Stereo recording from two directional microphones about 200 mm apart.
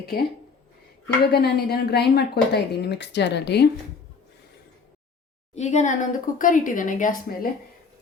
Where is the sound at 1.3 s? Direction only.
55° left (ahead or behind).